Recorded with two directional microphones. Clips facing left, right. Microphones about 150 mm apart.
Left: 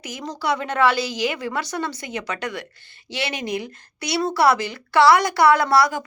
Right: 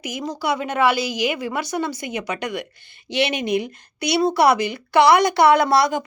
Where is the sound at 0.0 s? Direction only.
10° right (ahead or behind).